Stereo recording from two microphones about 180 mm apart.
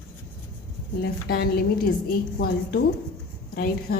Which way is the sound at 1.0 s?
60° left (ahead or behind).